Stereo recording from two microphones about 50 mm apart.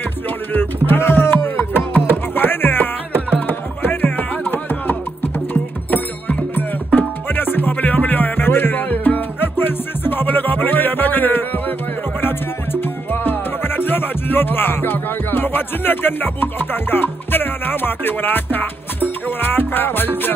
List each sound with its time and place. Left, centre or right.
0.5 s speech: left
2.0 s music: left
13.1 s music: left